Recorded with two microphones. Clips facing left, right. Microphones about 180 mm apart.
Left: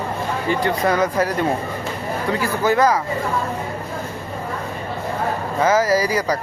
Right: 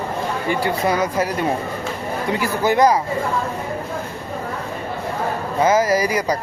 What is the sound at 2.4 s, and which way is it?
Speech, 15° right (ahead or behind).